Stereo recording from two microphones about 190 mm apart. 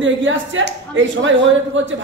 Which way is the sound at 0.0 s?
80° right.